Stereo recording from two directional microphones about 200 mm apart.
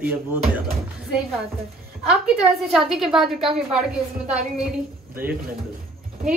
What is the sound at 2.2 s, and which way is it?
A woman's voice, centre (ahead or behind).